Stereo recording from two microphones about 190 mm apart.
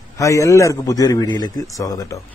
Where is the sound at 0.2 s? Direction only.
15° left (ahead or behind).